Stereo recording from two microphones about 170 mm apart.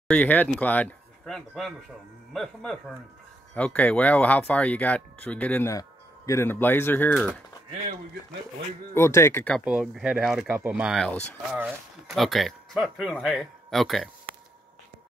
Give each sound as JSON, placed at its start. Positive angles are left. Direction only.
{"t": 0.1, "sound": "speech", "side_deg": 10}
{"t": 8.9, "sound": "speech", "side_deg": 15}
{"t": 9.7, "sound": "speech", "side_deg": -5}
{"t": 14.3, "sound": "a sound", "side_deg": -60}